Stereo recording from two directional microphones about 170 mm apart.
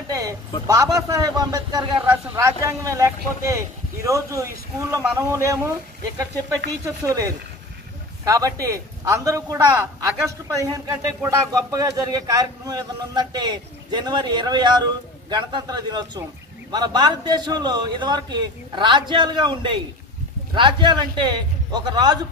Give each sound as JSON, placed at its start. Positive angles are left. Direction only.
{"t": 0.1, "sound": "a sound", "side_deg": -20}
{"t": 0.7, "sound": "speech", "side_deg": -20}
{"t": 6.8, "sound": "speech", "side_deg": -20}